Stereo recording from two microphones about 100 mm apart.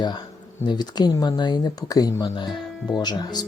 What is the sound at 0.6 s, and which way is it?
Speech, 45° left (ahead or behind).